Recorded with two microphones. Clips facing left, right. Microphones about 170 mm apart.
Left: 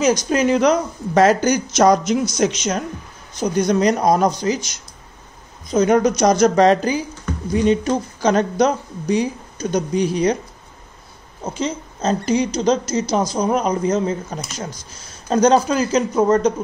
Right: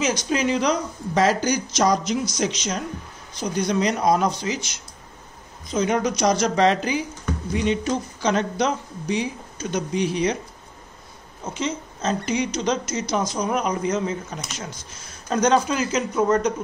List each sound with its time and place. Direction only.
0.0 s speech: 40° left (ahead or behind)
11.4 s speech: 35° left (ahead or behind)